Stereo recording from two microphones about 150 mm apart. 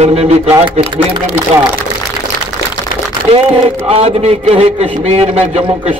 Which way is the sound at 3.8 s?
45° right (ahead or behind).